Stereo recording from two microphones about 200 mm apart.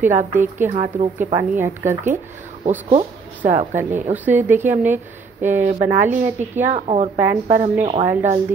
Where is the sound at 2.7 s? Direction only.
35° right (ahead or behind).